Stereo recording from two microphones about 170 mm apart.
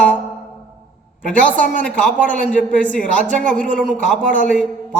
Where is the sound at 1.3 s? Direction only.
10° left (ahead or behind).